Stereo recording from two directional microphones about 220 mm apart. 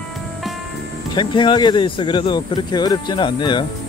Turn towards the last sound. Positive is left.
turn(degrees=20)  # may be behind; listen again after turning